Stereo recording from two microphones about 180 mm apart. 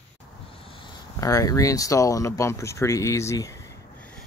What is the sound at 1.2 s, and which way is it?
Speech, 20° left (ahead or behind).